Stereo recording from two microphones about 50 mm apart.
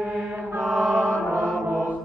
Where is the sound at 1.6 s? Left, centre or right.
Right.